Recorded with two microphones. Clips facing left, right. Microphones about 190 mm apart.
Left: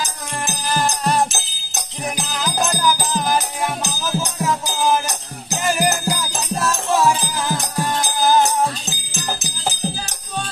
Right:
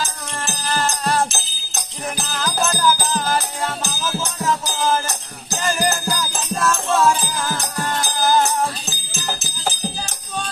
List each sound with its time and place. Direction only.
0.0 s music: 15° left (ahead or behind)
9.1 s jingle bell: 15° left (ahead or behind)